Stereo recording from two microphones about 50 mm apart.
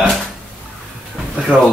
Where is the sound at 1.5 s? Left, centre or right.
Right.